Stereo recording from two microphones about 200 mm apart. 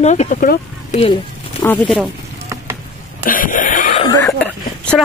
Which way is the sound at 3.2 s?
45° left (ahead or behind).